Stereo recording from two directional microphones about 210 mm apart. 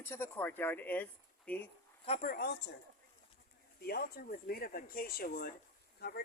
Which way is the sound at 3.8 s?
45° left (ahead or behind).